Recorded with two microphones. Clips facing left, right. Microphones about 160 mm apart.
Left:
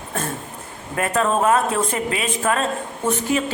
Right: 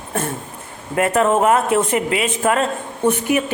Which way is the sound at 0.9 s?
25° right (ahead or behind).